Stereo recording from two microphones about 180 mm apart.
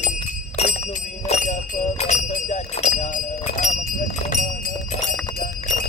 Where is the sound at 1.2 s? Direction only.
40° left (ahead or behind).